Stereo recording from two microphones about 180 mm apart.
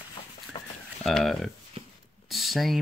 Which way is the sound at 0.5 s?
30° left (ahead or behind).